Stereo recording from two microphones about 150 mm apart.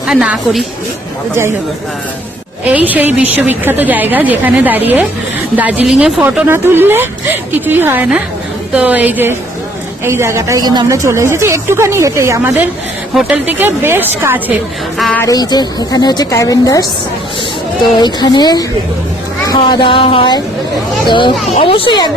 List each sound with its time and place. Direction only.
0.1 s a woman's voice: 5° right (ahead or behind)
2.6 s a woman's voice: 10° right (ahead or behind)
13.1 s a woman's voice: 5° right (ahead or behind)
14.9 s a woman's voice: centre (ahead or behind)
15.2 s a woman's voice: 25° left (ahead or behind)
17.9 s a woman's voice: 30° left (ahead or behind)